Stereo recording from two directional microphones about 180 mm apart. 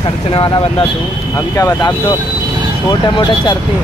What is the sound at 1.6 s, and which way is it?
Speech, 20° left (ahead or behind).